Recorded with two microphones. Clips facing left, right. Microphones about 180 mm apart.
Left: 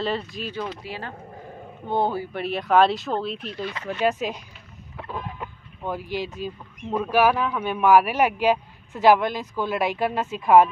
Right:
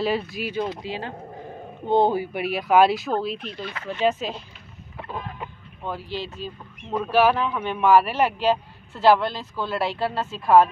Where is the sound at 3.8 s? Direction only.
15° left (ahead or behind).